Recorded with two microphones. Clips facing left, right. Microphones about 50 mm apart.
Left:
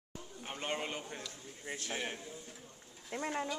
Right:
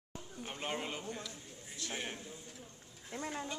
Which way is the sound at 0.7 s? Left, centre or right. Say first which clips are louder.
Even; centre.